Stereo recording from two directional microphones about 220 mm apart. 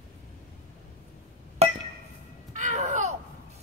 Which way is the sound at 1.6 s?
30° right (ahead or behind).